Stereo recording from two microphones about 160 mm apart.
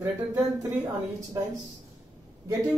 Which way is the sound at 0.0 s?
10° right (ahead or behind).